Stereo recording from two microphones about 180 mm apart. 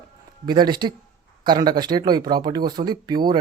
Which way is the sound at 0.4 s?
25° right (ahead or behind).